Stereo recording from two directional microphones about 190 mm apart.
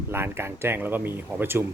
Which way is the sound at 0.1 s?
10° right (ahead or behind).